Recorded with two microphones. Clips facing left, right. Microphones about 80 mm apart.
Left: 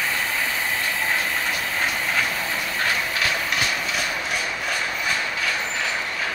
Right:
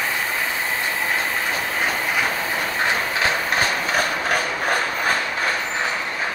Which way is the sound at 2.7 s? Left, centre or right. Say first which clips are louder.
Right 2 dB; right.